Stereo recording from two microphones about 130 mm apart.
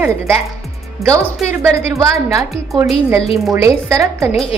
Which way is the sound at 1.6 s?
25° right (ahead or behind).